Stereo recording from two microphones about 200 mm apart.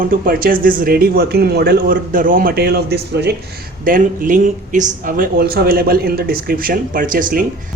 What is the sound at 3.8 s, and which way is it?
Speech, 45° right (ahead or behind).